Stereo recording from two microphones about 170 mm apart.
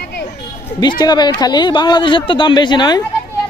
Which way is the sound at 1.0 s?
25° left (ahead or behind).